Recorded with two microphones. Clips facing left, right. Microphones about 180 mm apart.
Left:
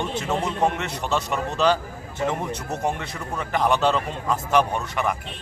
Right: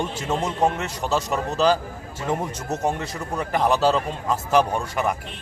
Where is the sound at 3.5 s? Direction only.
5° right (ahead or behind).